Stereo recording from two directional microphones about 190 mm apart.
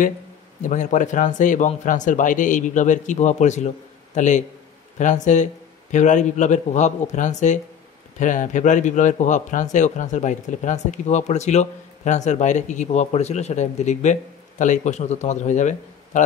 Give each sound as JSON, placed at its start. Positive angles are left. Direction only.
{"t": 0.7, "sound": "speech", "side_deg": 40}